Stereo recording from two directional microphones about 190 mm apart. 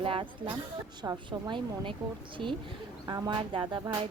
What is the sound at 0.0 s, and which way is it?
Speech, 30° right (ahead or behind).